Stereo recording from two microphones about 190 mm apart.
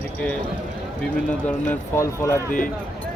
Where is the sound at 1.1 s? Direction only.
10° left (ahead or behind).